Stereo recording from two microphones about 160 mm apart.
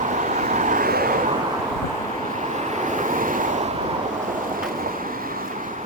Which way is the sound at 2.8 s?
55° right (ahead or behind).